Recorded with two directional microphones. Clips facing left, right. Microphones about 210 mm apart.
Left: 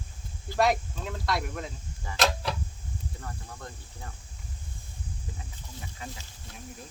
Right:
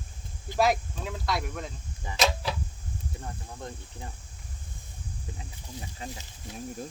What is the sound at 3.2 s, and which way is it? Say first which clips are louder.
Speech: right 2 dB; 20° right (ahead or behind).